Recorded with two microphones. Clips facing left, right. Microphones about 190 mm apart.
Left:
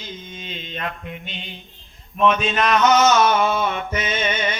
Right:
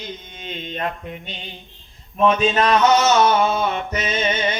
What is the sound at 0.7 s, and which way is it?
Music, 40° right (ahead or behind).